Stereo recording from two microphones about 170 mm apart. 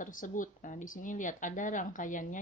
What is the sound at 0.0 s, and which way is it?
Speech, 50° left (ahead or behind).